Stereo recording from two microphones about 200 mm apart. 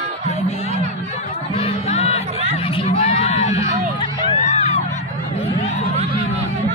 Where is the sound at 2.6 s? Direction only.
25° left (ahead or behind).